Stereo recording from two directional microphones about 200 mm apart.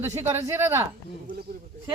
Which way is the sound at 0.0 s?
10° right (ahead or behind).